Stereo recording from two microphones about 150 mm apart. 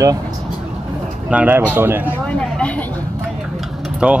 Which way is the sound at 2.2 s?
5° left (ahead or behind).